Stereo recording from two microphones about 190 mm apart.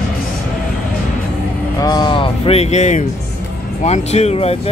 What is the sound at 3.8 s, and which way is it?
Speech, 35° left (ahead or behind).